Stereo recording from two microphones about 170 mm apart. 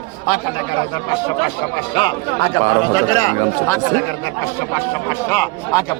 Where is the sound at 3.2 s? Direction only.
15° left (ahead or behind).